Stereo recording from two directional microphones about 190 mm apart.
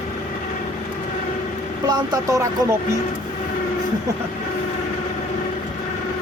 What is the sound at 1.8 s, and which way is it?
Speech, 20° right (ahead or behind).